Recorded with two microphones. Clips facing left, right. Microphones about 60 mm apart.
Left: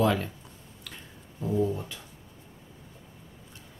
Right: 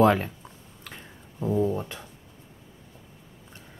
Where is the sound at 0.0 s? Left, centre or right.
Right.